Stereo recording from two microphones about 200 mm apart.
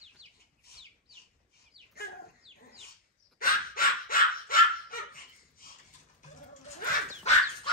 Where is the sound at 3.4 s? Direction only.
45° left (ahead or behind).